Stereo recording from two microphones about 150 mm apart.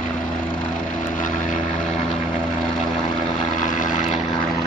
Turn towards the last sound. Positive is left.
turn(degrees=60)  # may be behind; listen again after turning